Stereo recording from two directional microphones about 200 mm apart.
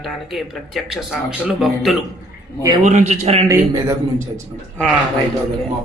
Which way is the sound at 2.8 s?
35° right (ahead or behind).